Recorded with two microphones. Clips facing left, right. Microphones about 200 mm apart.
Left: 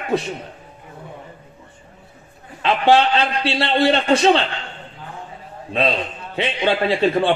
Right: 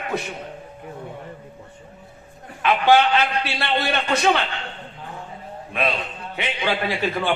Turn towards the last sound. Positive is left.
turn(degrees=30)  # may be behind; listen again after turning